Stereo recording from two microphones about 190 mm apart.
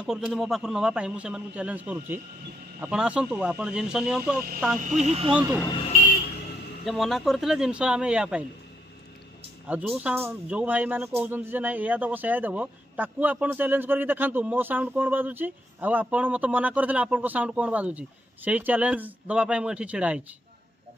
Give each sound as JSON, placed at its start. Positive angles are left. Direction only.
{"t": 0.0, "sound": "a man's voice", "side_deg": 0}
{"t": 5.0, "sound": "speech", "side_deg": -35}
{"t": 5.3, "sound": "speech", "side_deg": -10}
{"t": 6.9, "sound": "a man's voice", "side_deg": 0}
{"t": 9.7, "sound": "speech", "side_deg": -5}